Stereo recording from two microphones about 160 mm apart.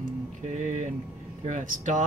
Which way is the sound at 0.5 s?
50° right (ahead or behind).